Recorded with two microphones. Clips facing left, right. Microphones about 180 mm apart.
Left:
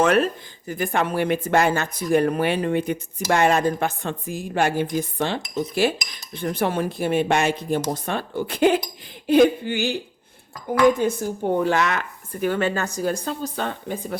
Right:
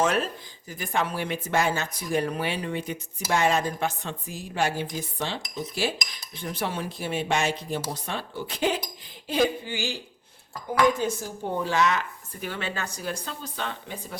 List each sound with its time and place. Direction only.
0.0 s speech: 65° left (ahead or behind)